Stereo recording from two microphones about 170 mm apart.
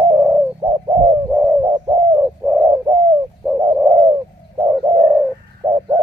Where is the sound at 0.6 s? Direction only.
20° right (ahead or behind).